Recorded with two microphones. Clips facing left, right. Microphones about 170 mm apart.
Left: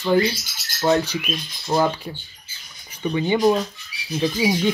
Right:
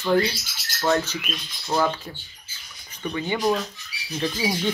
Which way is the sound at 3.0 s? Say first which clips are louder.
Left 6 dB; 20° left (ahead or behind).